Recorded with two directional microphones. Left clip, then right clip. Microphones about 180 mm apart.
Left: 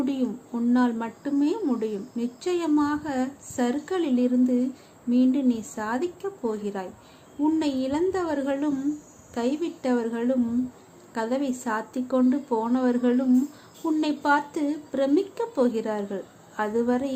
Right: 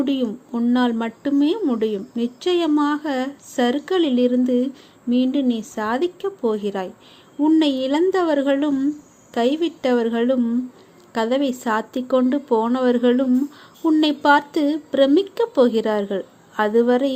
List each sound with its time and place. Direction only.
0.0 s a woman's voice: 25° right (ahead or behind)